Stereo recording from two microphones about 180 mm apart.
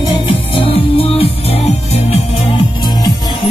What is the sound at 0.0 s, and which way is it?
Music, 30° left (ahead or behind).